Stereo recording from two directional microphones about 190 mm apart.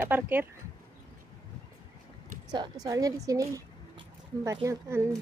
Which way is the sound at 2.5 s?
20° right (ahead or behind).